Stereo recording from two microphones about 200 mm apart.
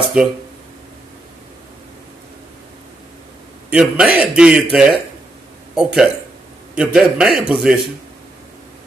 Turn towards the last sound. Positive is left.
turn(degrees=-5)  # may be behind; listen again after turning